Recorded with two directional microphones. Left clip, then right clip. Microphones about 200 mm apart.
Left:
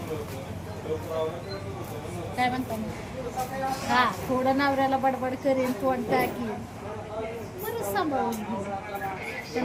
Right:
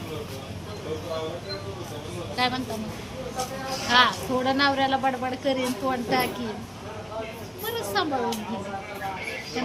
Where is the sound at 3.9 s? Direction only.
15° left (ahead or behind).